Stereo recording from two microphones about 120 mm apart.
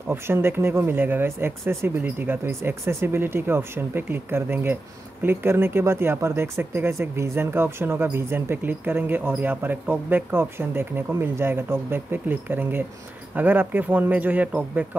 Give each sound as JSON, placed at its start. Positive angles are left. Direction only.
{"t": 0.1, "sound": "speech", "side_deg": -20}